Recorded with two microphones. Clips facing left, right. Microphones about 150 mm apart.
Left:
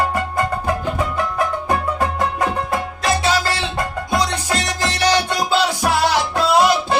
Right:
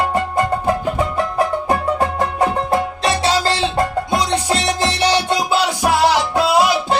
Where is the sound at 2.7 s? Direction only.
30° right (ahead or behind).